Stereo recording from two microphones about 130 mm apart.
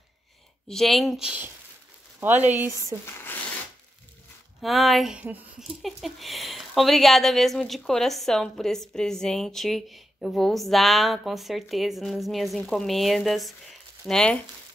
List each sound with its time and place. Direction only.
0.7 s speech: centre (ahead or behind); by 2.5 s 15° right (ahead or behind)
3.1 s zipper: 20° left (ahead or behind)
4.6 s speech: centre (ahead or behind)
5.6 s speech: centre (ahead or behind)